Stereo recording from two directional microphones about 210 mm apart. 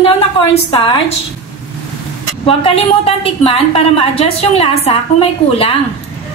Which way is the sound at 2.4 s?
25° left (ahead or behind).